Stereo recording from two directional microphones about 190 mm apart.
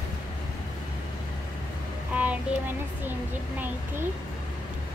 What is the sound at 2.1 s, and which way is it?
Child singing, 10° right (ahead or behind).